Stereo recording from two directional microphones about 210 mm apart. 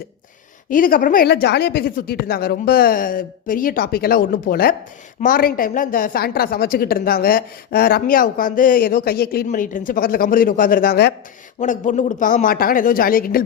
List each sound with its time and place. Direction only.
0.7 s a woman's voice: 40° left (ahead or behind)
11.6 s a man's voice: 35° left (ahead or behind)